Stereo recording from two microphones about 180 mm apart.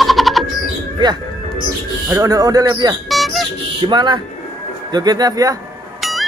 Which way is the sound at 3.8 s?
25° right (ahead or behind).